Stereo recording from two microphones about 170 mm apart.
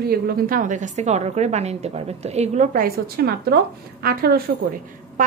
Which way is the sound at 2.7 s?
65° right (ahead or behind).